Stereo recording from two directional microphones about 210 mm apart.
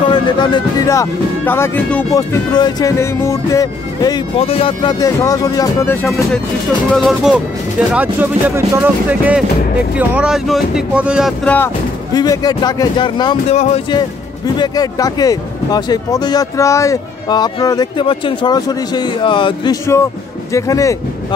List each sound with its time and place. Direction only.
0.1 s speech: 20° left (ahead or behind)
2.5 s speech: 20° left (ahead or behind)
6.9 s speech: centre (ahead or behind); by 13.9 s 30° left (ahead or behind)
13.9 s speech: 20° left (ahead or behind)